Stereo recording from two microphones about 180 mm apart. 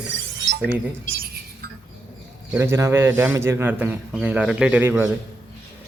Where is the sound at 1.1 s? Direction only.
60° right (ahead or behind).